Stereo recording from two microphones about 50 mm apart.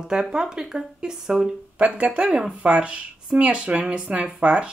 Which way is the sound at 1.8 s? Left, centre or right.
Right.